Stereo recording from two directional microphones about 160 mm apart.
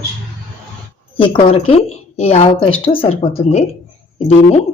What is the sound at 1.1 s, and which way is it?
A woman's voice, 35° left (ahead or behind).